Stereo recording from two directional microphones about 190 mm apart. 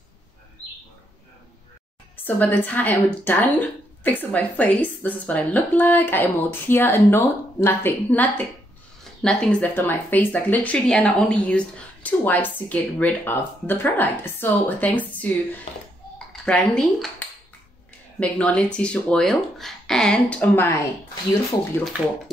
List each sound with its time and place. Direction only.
2.2 s speech: 10° left (ahead or behind)
16.4 s speech: 5° left (ahead or behind)
21.1 s speech: 20° left (ahead or behind)